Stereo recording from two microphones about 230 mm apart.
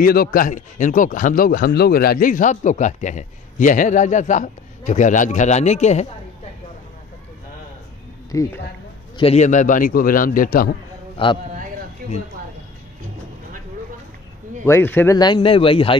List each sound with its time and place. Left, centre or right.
0.0 s speech: left
8.3 s speech: centre
9.1 s speech: left
11.2 s a man's voice: left
12.0 s speech: right
14.6 s a man's voice: centre